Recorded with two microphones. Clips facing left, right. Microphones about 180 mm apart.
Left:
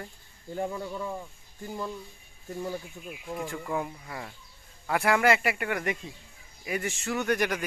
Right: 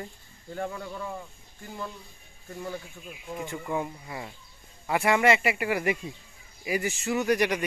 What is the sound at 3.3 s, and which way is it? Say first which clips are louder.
Speech: right 1 dB; centre (ahead or behind).